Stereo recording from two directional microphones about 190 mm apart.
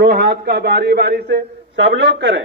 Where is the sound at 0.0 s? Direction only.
60° right (ahead or behind).